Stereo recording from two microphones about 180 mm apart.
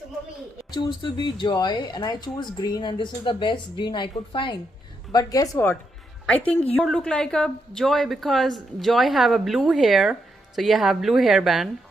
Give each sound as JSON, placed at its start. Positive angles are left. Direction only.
{"t": 0.7, "sound": "a woman's voice", "side_deg": 25}